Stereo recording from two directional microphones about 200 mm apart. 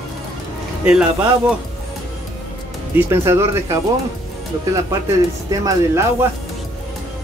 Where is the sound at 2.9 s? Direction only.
10° right (ahead or behind).